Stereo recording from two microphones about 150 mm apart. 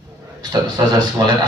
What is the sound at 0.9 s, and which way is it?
Speech, 25° right (ahead or behind).